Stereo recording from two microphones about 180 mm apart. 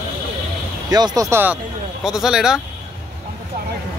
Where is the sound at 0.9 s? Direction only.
20° right (ahead or behind).